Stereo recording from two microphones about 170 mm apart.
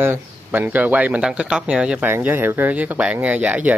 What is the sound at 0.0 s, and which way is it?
Speech, 10° right (ahead or behind).